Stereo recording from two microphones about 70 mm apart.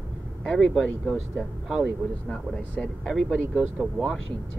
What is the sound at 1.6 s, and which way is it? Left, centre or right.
Speech, centre.